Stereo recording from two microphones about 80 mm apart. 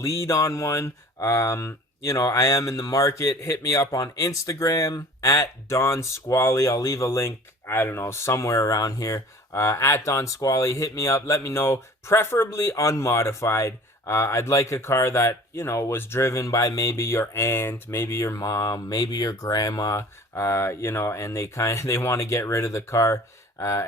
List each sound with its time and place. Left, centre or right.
0.0 s speech: left